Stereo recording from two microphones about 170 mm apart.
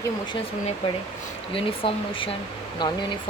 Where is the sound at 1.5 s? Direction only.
30° left (ahead or behind).